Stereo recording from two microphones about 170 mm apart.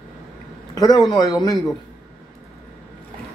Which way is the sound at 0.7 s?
25° left (ahead or behind).